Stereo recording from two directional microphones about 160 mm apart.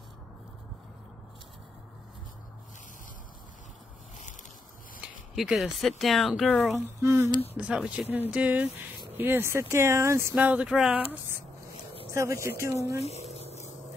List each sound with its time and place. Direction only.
5.3 s speech: centre (ahead or behind)
7.0 s speech: 15° right (ahead or behind)
7.5 s speech: 5° right (ahead or behind)
13.1 s a sound: 40° right (ahead or behind)